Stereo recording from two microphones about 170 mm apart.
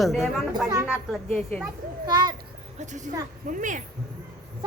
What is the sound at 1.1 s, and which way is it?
Speech, 5° left (ahead or behind).